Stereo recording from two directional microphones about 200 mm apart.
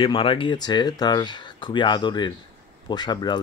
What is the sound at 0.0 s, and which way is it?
Speech, 25° left (ahead or behind).